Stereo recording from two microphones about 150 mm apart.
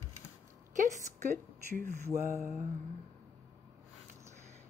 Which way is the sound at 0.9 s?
60° right (ahead or behind).